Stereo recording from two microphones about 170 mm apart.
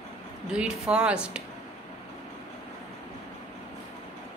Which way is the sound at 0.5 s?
5° right (ahead or behind).